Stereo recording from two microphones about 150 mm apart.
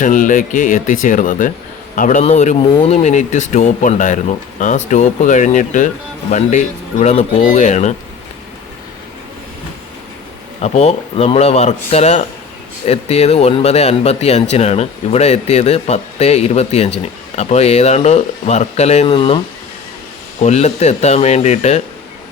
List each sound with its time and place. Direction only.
0.0 s speech: 60° left (ahead or behind)
10.6 s speech: 45° left (ahead or behind)
20.4 s speech: 50° left (ahead or behind)